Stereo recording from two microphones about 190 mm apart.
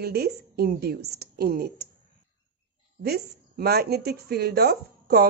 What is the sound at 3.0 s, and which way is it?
A woman's voice, 55° right (ahead or behind).